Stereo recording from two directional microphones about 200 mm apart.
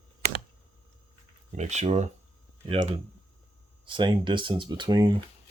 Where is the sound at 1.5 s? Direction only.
35° right (ahead or behind).